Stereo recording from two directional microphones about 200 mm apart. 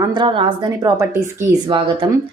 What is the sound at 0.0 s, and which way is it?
A woman's voice, 20° right (ahead or behind).